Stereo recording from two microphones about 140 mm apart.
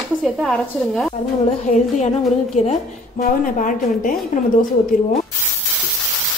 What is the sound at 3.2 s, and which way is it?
A woman's voice, 65° left (ahead or behind).